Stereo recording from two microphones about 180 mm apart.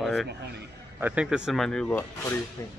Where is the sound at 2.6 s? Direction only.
20° left (ahead or behind).